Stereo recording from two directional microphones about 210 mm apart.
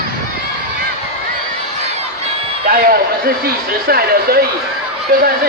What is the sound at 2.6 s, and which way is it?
Speech, 45° right (ahead or behind).